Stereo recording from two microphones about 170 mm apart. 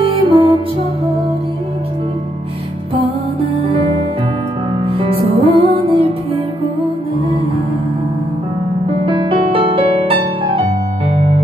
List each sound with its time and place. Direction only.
0.0 s music: 35° right (ahead or behind)
3.6 s music: 35° right (ahead or behind)
4.9 s music: 30° right (ahead or behind)
9.0 s music: 30° right (ahead or behind)